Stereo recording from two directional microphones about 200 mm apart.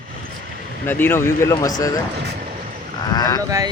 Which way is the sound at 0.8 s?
10° left (ahead or behind).